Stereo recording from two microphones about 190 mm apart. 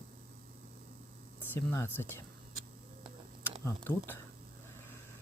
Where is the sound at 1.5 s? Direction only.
10° left (ahead or behind).